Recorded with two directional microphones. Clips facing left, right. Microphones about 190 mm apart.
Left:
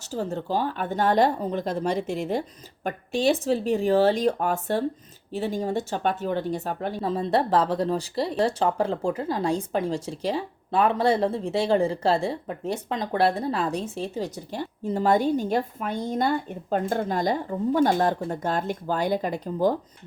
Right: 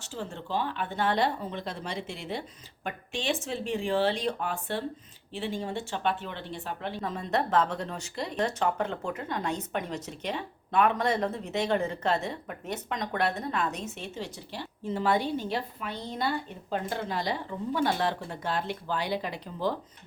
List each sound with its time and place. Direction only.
0.0 s speech: 40° left (ahead or behind)